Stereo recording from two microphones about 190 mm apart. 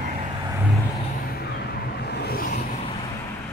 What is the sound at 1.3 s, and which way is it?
Vehicle, 60° left (ahead or behind).